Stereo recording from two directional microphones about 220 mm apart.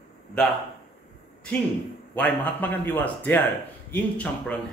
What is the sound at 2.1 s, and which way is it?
A man's voice, 10° left (ahead or behind).